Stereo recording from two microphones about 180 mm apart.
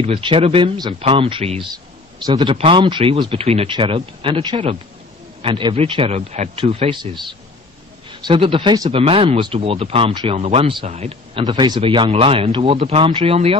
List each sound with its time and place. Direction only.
0.0 s speech: 30° right (ahead or behind)